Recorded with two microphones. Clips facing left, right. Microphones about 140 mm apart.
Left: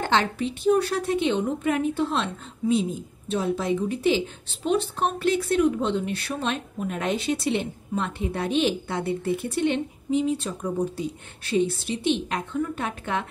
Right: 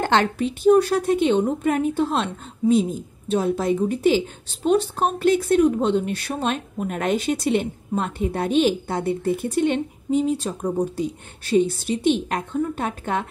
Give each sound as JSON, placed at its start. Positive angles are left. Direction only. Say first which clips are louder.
{"t": 0.0, "sound": "a woman's voice", "louder": "right 4 dB", "side_deg": -50}